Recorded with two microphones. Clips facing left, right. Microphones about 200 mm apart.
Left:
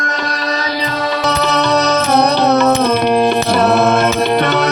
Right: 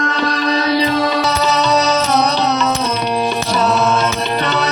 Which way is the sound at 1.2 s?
60° left (ahead or behind).